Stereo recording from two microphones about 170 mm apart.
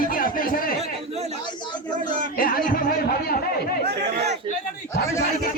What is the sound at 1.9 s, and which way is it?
Speech, 50° right (ahead or behind).